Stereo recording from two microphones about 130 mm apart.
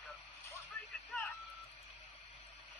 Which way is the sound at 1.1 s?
5° left (ahead or behind).